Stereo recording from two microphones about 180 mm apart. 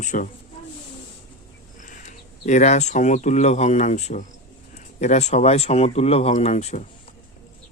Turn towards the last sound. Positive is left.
turn(degrees=40)  # may be behind; listen again after turning